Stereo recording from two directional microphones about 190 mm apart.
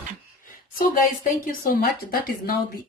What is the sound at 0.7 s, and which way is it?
A woman's voice, 45° left (ahead or behind).